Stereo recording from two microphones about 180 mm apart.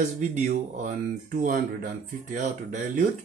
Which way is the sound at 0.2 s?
40° right (ahead or behind).